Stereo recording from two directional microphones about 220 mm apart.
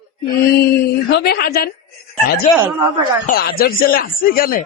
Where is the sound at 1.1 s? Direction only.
45° left (ahead or behind).